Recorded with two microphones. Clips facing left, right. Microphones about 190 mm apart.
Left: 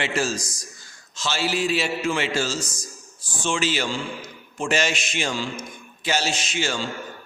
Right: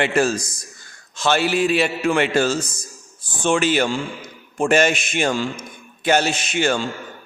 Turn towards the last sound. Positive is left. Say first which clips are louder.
# right 6 dB
turn(degrees=-55)  # may be behind; listen again after turning